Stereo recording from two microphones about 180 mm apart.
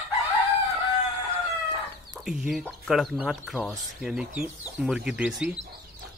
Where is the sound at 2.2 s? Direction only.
5° right (ahead or behind).